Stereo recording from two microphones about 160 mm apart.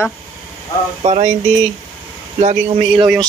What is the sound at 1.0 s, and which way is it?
Speech, 40° right (ahead or behind).